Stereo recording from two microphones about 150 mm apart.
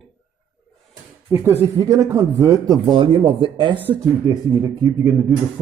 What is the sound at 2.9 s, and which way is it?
Speech, 35° right (ahead or behind).